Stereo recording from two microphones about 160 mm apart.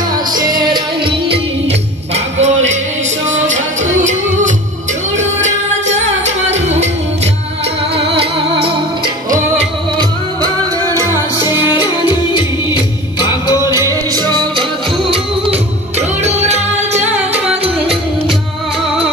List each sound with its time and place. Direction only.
1.3 s music: 40° right (ahead or behind)
7.9 s music: 35° right (ahead or behind)
11.7 s music: 30° left (ahead or behind)
13.7 s music: 25° right (ahead or behind); by 17.4 s 45° right (ahead or behind)